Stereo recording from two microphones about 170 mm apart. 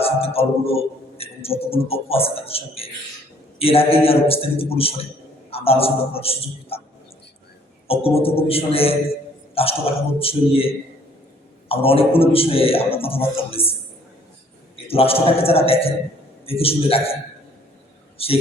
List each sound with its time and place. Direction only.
0.0 s a man's voice: 35° left (ahead or behind)
7.9 s a man's voice: 35° left (ahead or behind)
11.7 s a man's voice: 35° left (ahead or behind)
14.8 s a man's voice: 35° left (ahead or behind)
18.2 s a man's voice: 35° left (ahead or behind)